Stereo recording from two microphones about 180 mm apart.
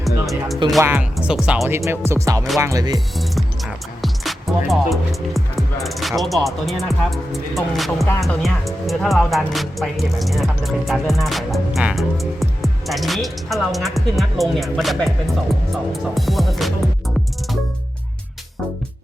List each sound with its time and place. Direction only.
0.3 s speech: centre (ahead or behind)
0.8 s speech: 10° right (ahead or behind)
3.2 s speech: centre (ahead or behind)